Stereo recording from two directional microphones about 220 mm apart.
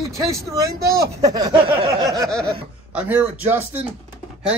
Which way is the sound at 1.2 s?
20° right (ahead or behind).